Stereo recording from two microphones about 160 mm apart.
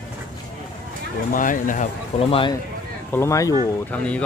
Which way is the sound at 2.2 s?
35° left (ahead or behind).